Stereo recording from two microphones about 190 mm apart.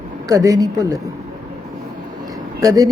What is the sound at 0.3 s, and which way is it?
Speech, 15° right (ahead or behind).